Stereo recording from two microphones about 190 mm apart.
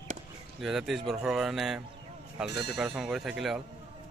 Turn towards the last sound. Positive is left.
turn(degrees=0)  # may be behind; listen again after turning